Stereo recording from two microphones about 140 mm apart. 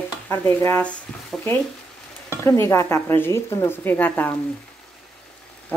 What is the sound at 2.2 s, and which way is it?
Speech, 20° left (ahead or behind).